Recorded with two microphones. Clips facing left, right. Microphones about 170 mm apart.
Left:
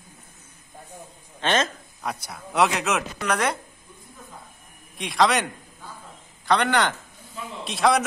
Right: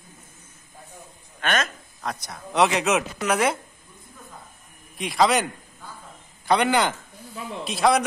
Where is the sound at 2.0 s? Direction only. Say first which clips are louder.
Even; 10° left (ahead or behind).